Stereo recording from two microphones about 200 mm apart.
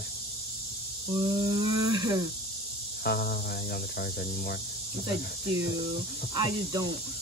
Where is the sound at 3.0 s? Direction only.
50° left (ahead or behind).